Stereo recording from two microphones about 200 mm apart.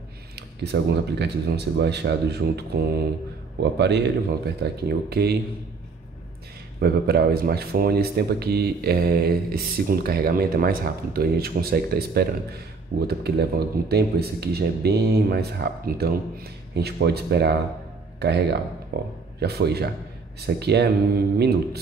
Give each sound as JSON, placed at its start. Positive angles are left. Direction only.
{"t": 0.4, "sound": "speech", "side_deg": -55}
{"t": 6.8, "sound": "speech", "side_deg": -50}